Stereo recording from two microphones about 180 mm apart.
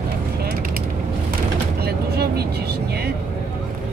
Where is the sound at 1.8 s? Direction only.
60° right (ahead or behind).